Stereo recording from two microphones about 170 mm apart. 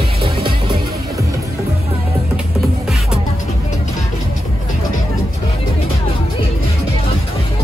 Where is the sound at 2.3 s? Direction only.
Centre (ahead or behind).